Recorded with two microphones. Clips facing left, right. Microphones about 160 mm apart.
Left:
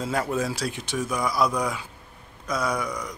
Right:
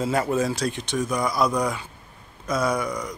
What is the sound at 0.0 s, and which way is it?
Speech, 5° right (ahead or behind).